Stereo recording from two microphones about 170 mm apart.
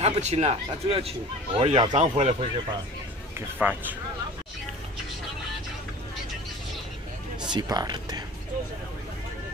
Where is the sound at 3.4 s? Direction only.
10° right (ahead or behind).